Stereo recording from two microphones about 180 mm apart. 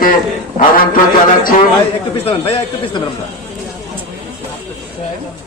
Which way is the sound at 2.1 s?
30° left (ahead or behind).